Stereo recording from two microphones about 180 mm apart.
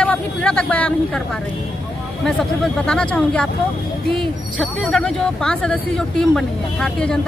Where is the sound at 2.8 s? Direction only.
5° left (ahead or behind).